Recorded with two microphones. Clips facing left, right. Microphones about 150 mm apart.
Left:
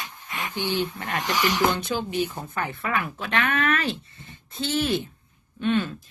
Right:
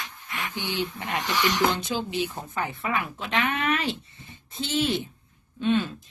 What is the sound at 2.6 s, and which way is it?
Speech, 15° right (ahead or behind).